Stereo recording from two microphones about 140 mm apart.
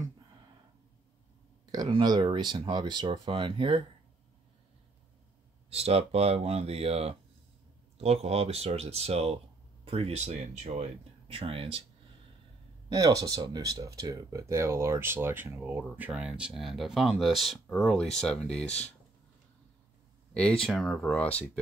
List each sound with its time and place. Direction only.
1.7 s speech: 30° right (ahead or behind)
5.7 s speech: 50° right (ahead or behind)
12.9 s speech: 25° right (ahead or behind); by 18.9 s 5° left (ahead or behind)
20.3 s speech: 5° left (ahead or behind)